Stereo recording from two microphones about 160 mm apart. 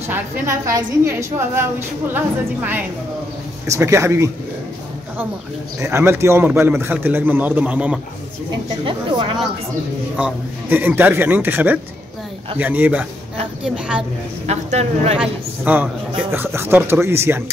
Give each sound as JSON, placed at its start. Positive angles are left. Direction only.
{"t": 0.1, "sound": "a man's voice", "side_deg": -20}
{"t": 5.8, "sound": "a man's voice", "side_deg": -15}
{"t": 8.8, "sound": "speech", "side_deg": -30}
{"t": 10.1, "sound": "a man's voice", "side_deg": -10}
{"t": 14.4, "sound": "a man's voice", "side_deg": -45}
{"t": 15.1, "sound": "a man's voice", "side_deg": -10}